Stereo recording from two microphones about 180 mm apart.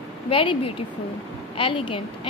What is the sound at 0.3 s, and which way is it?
Speech, 30° left (ahead or behind).